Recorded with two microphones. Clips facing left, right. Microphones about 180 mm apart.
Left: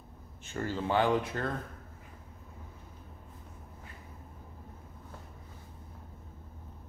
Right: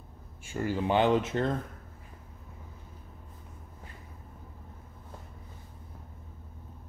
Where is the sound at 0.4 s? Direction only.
10° right (ahead or behind).